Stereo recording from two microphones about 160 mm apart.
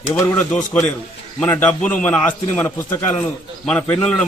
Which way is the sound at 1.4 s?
10° left (ahead or behind).